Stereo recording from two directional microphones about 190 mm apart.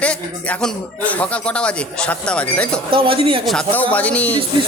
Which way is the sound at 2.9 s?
30° right (ahead or behind).